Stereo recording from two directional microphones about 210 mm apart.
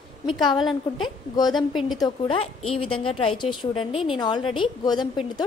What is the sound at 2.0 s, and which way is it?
A woman's voice, 20° left (ahead or behind).